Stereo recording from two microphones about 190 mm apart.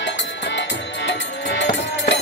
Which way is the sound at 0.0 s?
70° left (ahead or behind).